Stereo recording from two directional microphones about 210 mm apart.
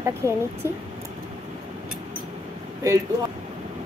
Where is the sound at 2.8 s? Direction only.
15° right (ahead or behind).